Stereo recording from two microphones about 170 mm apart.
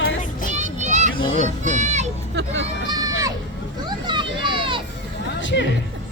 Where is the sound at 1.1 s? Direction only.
30° left (ahead or behind).